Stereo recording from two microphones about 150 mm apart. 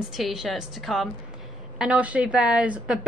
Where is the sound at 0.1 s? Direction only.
5° right (ahead or behind).